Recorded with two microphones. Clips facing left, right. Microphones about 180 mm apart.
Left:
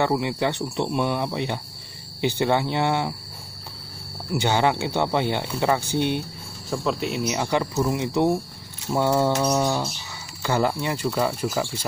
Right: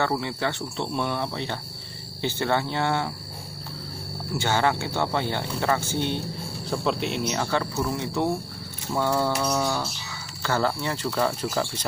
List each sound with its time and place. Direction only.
0.0 s speech: 15° left (ahead or behind)
4.3 s speech: 15° left (ahead or behind)
6.7 s speech: centre (ahead or behind); by 8.3 s 15° left (ahead or behind)
8.9 s mantra: 20° left (ahead or behind)
10.4 s speech: 15° left (ahead or behind)